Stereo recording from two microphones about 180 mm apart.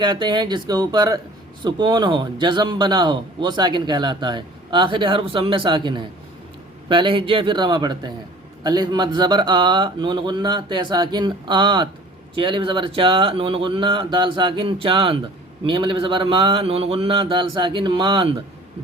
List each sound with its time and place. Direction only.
0.0 s speech: 25° right (ahead or behind)